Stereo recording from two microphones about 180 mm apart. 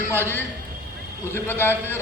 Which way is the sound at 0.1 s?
10° left (ahead or behind).